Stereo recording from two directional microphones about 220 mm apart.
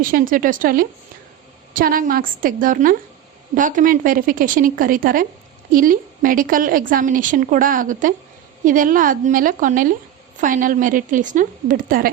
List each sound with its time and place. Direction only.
0.0 s a woman's voice: 40° right (ahead or behind)